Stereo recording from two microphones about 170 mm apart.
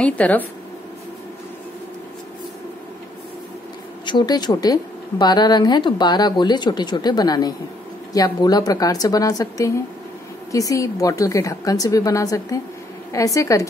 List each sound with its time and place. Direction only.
0.0 s speech: 10° left (ahead or behind)
4.0 s speech: 25° left (ahead or behind)